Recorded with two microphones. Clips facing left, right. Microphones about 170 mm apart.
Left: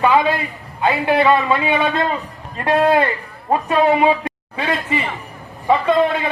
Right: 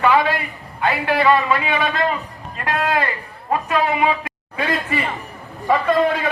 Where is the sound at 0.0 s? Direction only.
20° left (ahead or behind).